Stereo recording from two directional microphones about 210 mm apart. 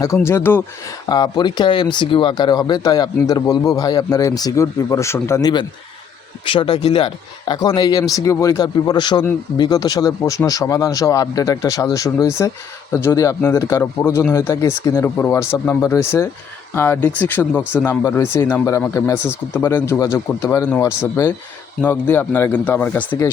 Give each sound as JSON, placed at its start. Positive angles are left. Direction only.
{"t": 0.0, "sound": "speech", "side_deg": 15}